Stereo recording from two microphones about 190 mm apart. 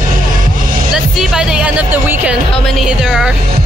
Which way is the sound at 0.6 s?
45° right (ahead or behind).